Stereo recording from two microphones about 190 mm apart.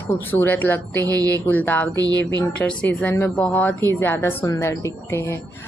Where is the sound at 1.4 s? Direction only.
10° left (ahead or behind).